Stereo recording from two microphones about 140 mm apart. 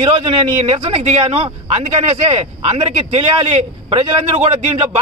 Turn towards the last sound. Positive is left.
turn(degrees=-50)  # may be behind; listen again after turning